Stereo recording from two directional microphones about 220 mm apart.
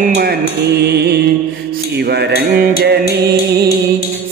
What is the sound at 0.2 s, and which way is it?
Mantra, 45° right (ahead or behind).